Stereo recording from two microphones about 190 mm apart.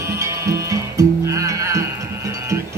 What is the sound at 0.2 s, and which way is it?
Music, 15° right (ahead or behind).